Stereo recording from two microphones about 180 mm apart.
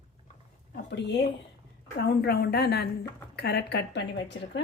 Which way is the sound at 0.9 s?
75° left (ahead or behind).